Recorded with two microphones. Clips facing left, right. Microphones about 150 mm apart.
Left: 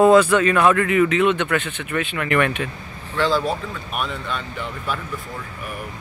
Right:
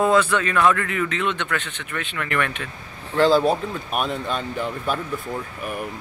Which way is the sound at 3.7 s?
40° right (ahead or behind).